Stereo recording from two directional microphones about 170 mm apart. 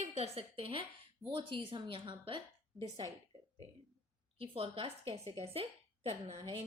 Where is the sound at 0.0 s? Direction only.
35° right (ahead or behind).